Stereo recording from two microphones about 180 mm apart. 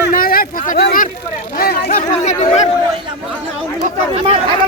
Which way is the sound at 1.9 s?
35° left (ahead or behind).